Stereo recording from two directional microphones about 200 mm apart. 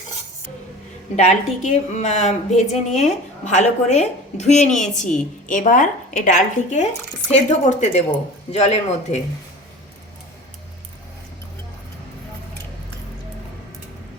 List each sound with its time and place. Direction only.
1.1 s speech: 35° left (ahead or behind)